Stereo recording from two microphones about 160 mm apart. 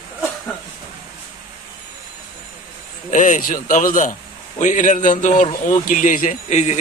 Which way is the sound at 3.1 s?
55° left (ahead or behind).